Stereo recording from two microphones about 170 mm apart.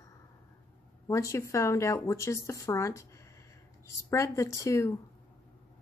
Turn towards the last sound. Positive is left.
turn(degrees=15)  # may be behind; listen again after turning